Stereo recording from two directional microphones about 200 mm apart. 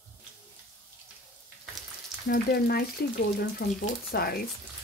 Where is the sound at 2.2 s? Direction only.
50° left (ahead or behind).